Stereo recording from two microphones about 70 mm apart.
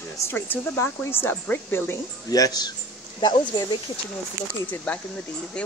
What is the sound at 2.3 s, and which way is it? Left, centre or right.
Speech, left.